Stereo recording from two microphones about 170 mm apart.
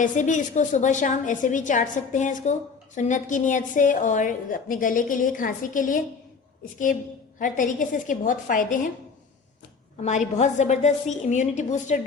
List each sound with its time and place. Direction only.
0.0 s a woman's voice: 45° left (ahead or behind)
7.3 s a woman's voice: 50° left (ahead or behind)
10.0 s a woman's voice: 45° left (ahead or behind)